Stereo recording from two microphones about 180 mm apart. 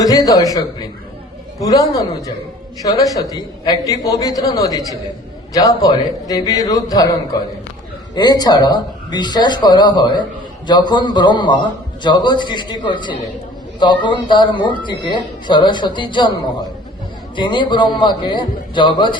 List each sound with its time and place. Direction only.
0.0 s speech: 20° left (ahead or behind)
17.3 s speech: 25° left (ahead or behind)